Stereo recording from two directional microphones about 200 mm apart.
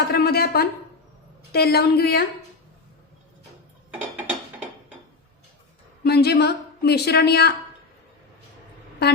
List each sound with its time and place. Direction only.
0.1 s a woman's voice: 50° left (ahead or behind)
6.0 s a woman's voice: 55° left (ahead or behind)
9.0 s a woman's voice: 55° left (ahead or behind)